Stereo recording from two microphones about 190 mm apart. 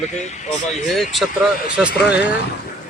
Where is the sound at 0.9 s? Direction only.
Centre (ahead or behind).